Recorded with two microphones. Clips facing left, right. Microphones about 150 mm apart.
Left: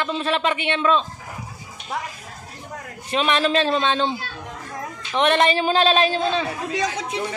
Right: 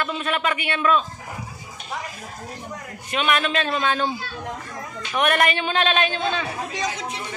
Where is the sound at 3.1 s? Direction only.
30° left (ahead or behind).